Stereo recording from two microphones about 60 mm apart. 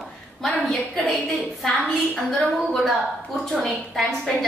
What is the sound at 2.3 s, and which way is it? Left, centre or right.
A woman's voice, centre.